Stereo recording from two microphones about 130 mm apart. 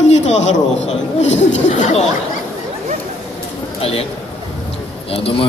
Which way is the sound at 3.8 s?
50° left (ahead or behind).